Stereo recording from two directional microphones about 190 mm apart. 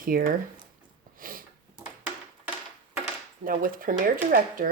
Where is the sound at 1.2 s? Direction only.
45° right (ahead or behind).